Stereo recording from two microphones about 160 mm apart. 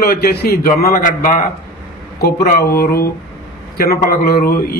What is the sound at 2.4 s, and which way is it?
A man's voice, 75° left (ahead or behind).